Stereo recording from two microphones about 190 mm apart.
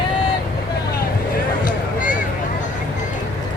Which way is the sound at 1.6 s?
45° left (ahead or behind).